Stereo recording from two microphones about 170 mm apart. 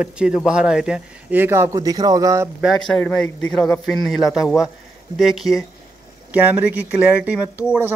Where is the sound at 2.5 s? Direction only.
Centre (ahead or behind).